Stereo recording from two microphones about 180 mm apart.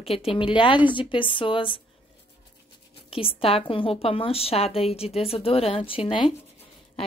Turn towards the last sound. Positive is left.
turn(degrees=30)  # may be behind; listen again after turning